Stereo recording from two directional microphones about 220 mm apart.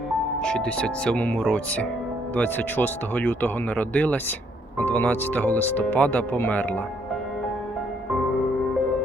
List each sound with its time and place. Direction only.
0.4 s speech: 5° left (ahead or behind)